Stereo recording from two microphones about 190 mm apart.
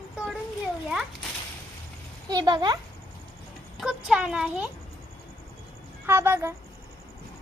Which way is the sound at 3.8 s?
5° right (ahead or behind).